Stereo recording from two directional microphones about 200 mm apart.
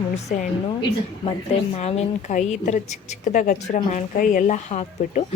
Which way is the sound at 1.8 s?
35° left (ahead or behind).